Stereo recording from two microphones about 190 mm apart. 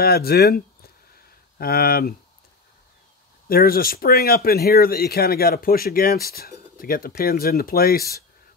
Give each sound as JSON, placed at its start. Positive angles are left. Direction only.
{"t": 0.0, "sound": "speech", "side_deg": 55}
{"t": 3.4, "sound": "speech", "side_deg": 50}